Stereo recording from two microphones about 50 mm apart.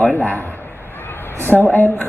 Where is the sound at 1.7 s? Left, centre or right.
Left.